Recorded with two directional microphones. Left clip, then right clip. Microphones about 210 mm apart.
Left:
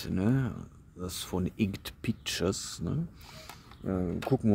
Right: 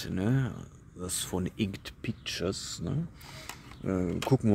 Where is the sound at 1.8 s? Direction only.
15° left (ahead or behind).